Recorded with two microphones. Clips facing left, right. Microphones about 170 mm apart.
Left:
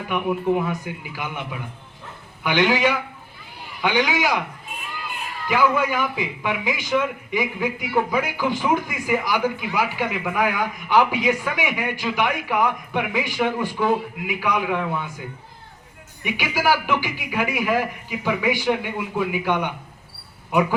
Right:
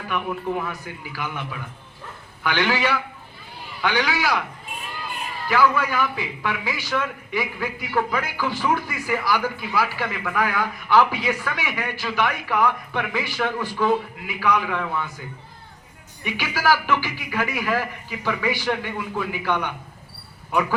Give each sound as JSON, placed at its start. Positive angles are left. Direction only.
{"t": 0.1, "sound": "a man's voice", "side_deg": 15}
{"t": 5.5, "sound": "a man's voice", "side_deg": 15}
{"t": 16.2, "sound": "a man's voice", "side_deg": 15}